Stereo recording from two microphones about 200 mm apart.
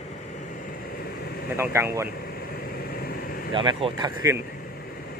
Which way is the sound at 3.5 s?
25° right (ahead or behind).